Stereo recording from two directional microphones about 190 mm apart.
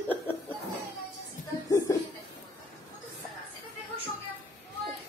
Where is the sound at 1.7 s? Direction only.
15° left (ahead or behind).